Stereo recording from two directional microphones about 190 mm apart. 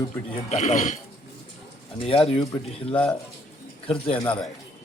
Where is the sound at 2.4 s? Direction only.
15° left (ahead or behind).